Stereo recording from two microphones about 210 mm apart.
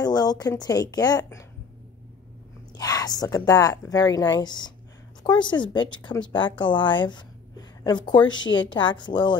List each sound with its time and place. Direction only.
0.0 s speech: 20° left (ahead or behind)
2.7 s a woman's voice: 15° left (ahead or behind)